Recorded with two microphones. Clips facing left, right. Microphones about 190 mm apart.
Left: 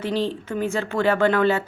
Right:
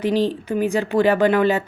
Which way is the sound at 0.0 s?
15° right (ahead or behind).